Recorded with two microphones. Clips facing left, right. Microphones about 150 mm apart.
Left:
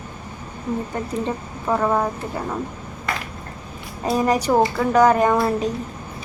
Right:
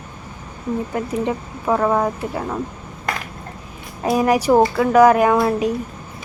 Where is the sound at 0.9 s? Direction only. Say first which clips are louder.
Right 3 dB; 10° right (ahead or behind).